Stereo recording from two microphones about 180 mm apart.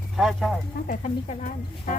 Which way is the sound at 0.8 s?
45° left (ahead or behind).